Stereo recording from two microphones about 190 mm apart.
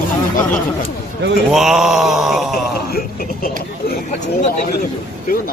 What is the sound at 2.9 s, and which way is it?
Speech, 50° left (ahead or behind).